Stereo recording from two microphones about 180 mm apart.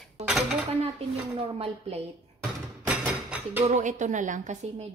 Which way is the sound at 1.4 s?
35° right (ahead or behind).